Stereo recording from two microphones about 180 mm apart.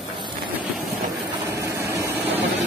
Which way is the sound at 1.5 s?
15° right (ahead or behind).